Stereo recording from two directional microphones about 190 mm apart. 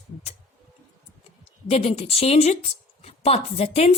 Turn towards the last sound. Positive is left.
turn(degrees=35)  # may be behind; listen again after turning